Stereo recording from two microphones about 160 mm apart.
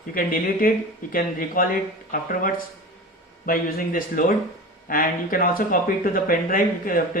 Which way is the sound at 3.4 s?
60° left (ahead or behind).